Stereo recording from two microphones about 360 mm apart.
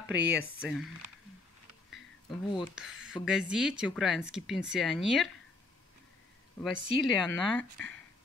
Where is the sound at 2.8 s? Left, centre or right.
Centre.